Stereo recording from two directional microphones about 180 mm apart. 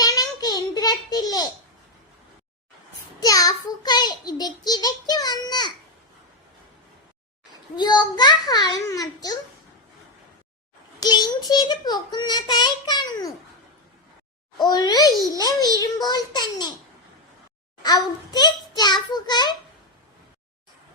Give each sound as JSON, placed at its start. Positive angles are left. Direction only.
{"t": 0.0, "sound": "a sound", "side_deg": 20}
{"t": 3.2, "sound": "a child's voice", "side_deg": 20}
{"t": 7.8, "sound": "a child's voice", "side_deg": 25}
{"t": 11.0, "sound": "a child's voice", "side_deg": 20}
{"t": 14.7, "sound": "a child's voice", "side_deg": 20}
{"t": 17.8, "sound": "a child's voice", "side_deg": 25}